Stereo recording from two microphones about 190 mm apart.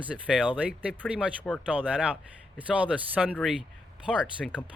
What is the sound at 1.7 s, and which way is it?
Speech, 5° right (ahead or behind).